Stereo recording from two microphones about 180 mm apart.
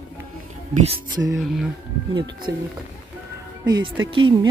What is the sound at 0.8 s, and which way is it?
Speech, 25° right (ahead or behind).